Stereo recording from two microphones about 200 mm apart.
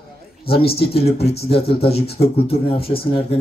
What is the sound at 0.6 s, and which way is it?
Speech, 30° left (ahead or behind).